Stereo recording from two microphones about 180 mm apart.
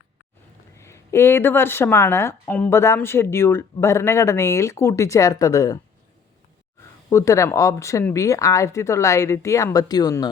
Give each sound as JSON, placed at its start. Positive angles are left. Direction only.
{"t": 0.8, "sound": "a woman's voice", "side_deg": 15}
{"t": 7.1, "sound": "a woman's voice", "side_deg": 15}